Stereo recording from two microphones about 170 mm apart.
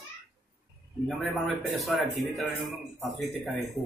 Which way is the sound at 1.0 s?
Centre (ahead or behind).